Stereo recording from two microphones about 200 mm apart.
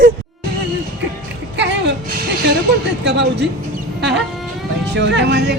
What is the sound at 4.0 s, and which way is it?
Music, 60° right (ahead or behind).